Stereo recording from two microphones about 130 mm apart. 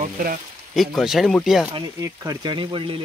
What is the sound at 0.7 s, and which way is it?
Speech, centre (ahead or behind).